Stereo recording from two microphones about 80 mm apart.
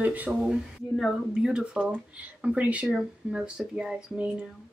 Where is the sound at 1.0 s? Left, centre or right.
Centre.